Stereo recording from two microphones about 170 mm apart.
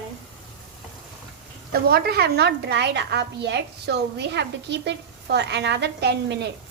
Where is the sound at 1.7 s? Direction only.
60° right (ahead or behind); by 6.4 s 80° right.